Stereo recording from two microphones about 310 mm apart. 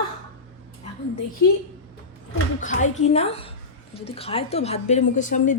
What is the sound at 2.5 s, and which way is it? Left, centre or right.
A woman's voice, left.